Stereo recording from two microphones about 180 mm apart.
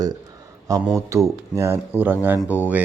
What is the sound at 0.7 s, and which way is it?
Speech, 20° right (ahead or behind).